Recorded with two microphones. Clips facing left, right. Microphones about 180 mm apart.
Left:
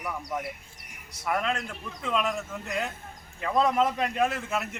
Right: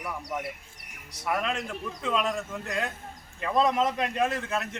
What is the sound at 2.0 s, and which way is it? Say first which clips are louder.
A man's voice: even; centre (ahead or behind).